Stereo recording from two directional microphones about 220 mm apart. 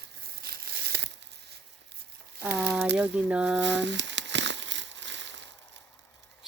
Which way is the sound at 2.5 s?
5° right (ahead or behind).